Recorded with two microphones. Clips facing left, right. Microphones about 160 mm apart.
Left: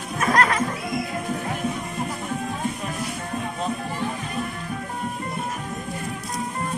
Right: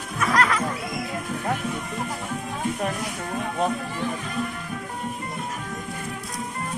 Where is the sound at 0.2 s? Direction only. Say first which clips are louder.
Left 1 dB; 35° left (ahead or behind).